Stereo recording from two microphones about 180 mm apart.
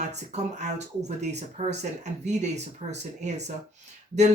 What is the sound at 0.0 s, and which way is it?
Speech, 40° right (ahead or behind).